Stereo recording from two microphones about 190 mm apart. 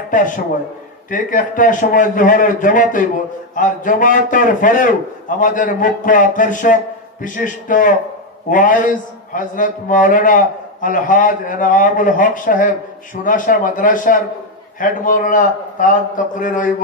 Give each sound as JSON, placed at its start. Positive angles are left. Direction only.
{"t": 0.1, "sound": "a man's voice", "side_deg": 45}